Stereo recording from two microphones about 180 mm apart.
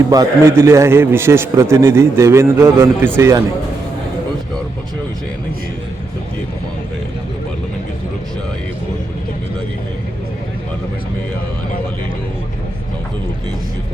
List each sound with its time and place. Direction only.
0.1 s a man's voice: 15° right (ahead or behind)